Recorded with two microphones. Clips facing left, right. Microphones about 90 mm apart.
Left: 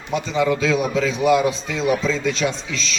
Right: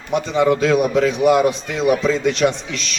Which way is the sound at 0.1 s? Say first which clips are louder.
Right 4 dB; 55° right (ahead or behind).